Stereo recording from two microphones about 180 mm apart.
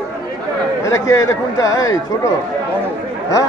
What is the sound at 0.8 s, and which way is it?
Speech, 20° left (ahead or behind).